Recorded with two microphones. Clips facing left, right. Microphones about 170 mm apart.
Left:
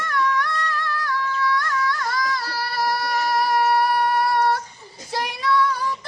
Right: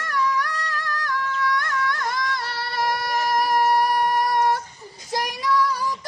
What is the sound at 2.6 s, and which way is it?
Child singing, 20° right (ahead or behind).